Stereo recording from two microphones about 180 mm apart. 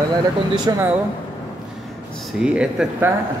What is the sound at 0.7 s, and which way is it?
Speech, 20° right (ahead or behind).